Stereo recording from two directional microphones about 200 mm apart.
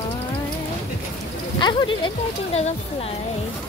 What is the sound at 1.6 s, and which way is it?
Speech, 25° left (ahead or behind).